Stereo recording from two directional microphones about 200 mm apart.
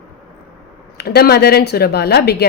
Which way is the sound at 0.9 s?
50° left (ahead or behind).